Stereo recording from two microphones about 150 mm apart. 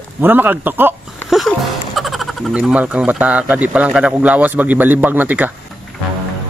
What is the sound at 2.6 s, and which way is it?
Speech, 10° right (ahead or behind).